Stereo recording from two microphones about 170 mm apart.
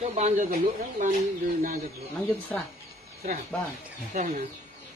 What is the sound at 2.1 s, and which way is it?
Speech, 10° left (ahead or behind).